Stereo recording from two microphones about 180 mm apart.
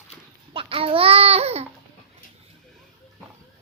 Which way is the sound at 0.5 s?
30° right (ahead or behind).